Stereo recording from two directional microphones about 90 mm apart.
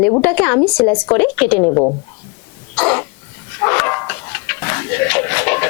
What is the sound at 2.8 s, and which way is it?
Cough, 20° left (ahead or behind).